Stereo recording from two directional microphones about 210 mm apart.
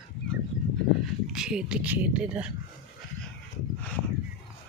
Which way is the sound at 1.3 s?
5° right (ahead or behind).